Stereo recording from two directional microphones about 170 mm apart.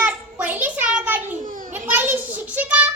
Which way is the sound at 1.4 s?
50° right (ahead or behind).